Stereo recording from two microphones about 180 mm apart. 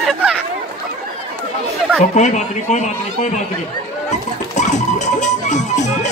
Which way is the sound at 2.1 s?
40° left (ahead or behind).